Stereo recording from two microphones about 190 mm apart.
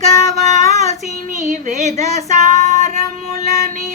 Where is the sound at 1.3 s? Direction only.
40° right (ahead or behind).